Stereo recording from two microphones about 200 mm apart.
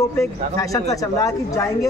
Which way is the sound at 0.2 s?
15° left (ahead or behind).